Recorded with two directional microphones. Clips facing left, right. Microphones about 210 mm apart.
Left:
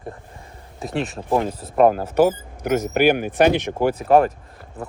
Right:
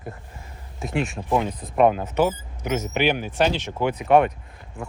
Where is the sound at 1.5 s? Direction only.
5° left (ahead or behind).